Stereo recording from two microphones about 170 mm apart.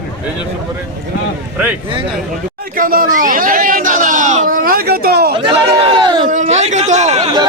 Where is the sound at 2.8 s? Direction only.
55° right (ahead or behind).